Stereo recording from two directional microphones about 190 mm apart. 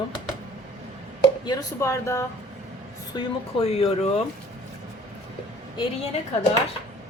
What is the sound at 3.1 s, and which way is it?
Speech, 30° left (ahead or behind).